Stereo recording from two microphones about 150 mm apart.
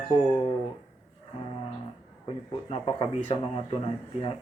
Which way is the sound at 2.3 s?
35° left (ahead or behind).